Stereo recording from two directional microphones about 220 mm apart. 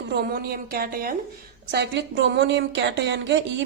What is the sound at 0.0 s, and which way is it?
A woman's voice, 45° right (ahead or behind).